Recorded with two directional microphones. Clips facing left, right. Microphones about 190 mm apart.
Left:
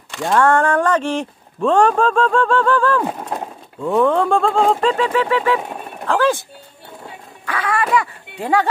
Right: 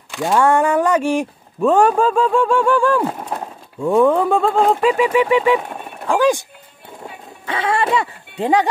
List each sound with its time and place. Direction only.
0.1 s speech: 5° right (ahead or behind)
7.4 s speech: 25° right (ahead or behind)